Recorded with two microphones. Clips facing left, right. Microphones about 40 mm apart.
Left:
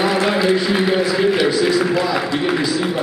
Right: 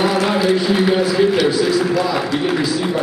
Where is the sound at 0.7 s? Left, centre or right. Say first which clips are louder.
Right 2 dB; centre.